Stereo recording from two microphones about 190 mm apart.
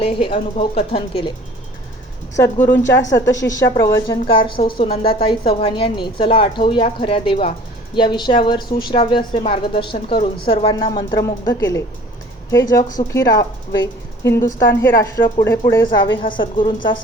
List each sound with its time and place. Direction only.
0.0 s speech: 30° left (ahead or behind)
2.3 s a woman's voice: 15° left (ahead or behind)